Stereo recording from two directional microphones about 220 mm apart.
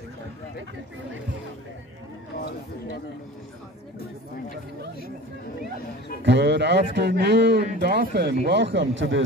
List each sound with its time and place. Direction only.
6.2 s a man's voice: 50° right (ahead or behind)